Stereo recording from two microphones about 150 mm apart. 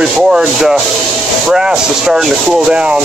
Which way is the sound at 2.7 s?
5° right (ahead or behind).